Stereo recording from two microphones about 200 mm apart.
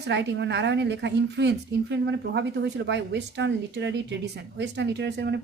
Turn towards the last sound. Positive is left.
turn(degrees=-60)  # may be behind; listen again after turning